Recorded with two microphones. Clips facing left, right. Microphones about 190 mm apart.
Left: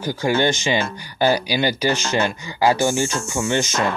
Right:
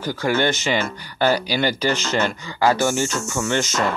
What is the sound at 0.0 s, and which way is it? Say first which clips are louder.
Speech: left 1 dB; 15° left (ahead or behind).